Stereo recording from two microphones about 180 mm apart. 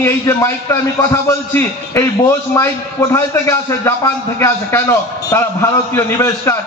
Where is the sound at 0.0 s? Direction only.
15° left (ahead or behind).